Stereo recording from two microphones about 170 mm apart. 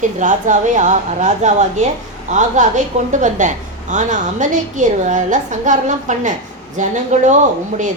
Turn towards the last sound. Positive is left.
turn(degrees=-45)  # may be behind; listen again after turning